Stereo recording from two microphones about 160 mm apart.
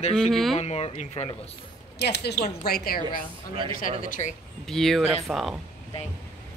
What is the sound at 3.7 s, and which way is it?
Speech, 60° left (ahead or behind).